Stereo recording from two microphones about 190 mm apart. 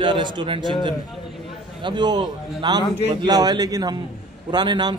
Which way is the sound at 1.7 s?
25° right (ahead or behind).